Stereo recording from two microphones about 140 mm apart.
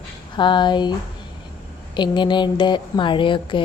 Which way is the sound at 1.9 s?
35° left (ahead or behind).